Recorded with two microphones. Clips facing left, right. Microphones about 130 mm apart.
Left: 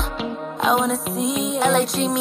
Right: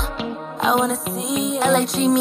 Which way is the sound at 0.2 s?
Centre (ahead or behind).